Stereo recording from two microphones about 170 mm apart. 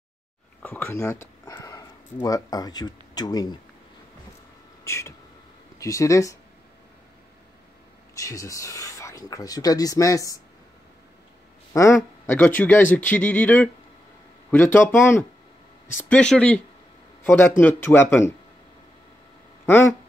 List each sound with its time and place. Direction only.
0.6 s speech: 10° left (ahead or behind)
4.8 s speech: 15° left (ahead or behind)
8.1 s speech: 20° left (ahead or behind)
11.7 s speech: 15° left (ahead or behind)
16.0 s speech: 5° left (ahead or behind)
19.6 s speech: 15° left (ahead or behind)